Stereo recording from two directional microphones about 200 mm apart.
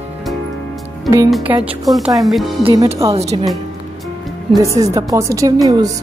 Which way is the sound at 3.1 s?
30° right (ahead or behind).